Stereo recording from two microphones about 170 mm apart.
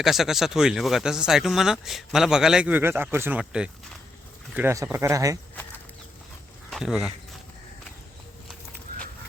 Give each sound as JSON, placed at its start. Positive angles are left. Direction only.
{"t": 0.0, "sound": "speech", "side_deg": 0}
{"t": 6.7, "sound": "speech", "side_deg": 0}